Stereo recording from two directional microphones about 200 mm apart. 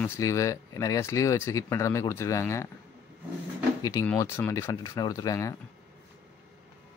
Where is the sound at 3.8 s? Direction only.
15° left (ahead or behind).